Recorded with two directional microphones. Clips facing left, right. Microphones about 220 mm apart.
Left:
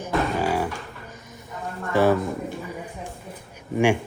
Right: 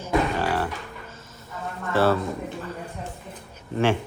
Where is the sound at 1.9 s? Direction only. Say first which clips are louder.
Left 2 dB; 15° left (ahead or behind).